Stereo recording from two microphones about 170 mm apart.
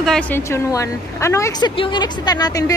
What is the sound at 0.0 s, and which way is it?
A woman's voice, 5° left (ahead or behind).